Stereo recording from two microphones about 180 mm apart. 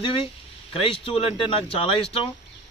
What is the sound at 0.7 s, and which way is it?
Speech, 30° left (ahead or behind).